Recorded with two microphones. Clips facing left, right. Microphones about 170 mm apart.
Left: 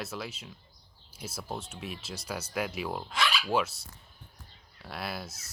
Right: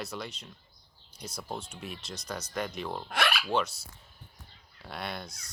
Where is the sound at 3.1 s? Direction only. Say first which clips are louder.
Right 2 dB; 60° right (ahead or behind).